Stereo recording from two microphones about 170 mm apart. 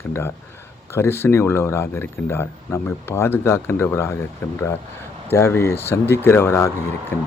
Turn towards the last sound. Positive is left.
turn(degrees=15)  # may be behind; listen again after turning